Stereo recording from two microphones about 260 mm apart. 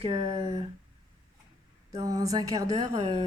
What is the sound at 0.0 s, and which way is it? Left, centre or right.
Speech, centre.